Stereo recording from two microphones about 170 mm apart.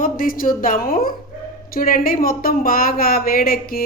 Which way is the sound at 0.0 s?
55° left (ahead or behind).